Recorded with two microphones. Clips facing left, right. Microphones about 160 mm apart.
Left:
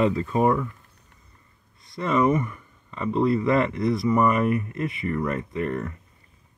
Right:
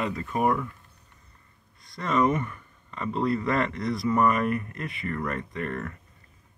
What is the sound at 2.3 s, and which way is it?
Speech, 10° left (ahead or behind).